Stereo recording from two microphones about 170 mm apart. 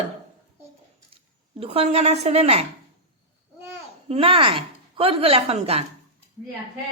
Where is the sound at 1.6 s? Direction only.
35° right (ahead or behind).